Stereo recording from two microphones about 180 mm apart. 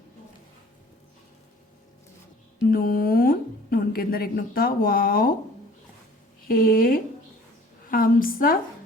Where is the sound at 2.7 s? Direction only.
55° left (ahead or behind).